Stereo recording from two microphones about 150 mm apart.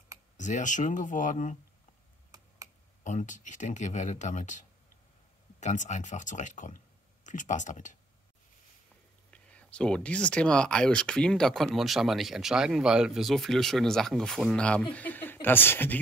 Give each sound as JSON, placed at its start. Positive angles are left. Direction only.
{"t": 0.4, "sound": "speech", "side_deg": 55}
{"t": 3.0, "sound": "speech", "side_deg": 55}
{"t": 9.3, "sound": "speech", "side_deg": 10}